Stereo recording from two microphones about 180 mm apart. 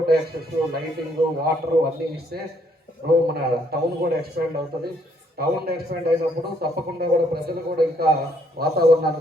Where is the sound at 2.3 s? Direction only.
60° right (ahead or behind).